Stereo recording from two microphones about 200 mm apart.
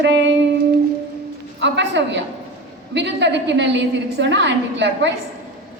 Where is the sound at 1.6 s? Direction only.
60° right (ahead or behind).